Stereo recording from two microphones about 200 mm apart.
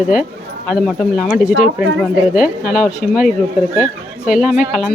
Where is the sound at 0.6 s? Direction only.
Centre (ahead or behind).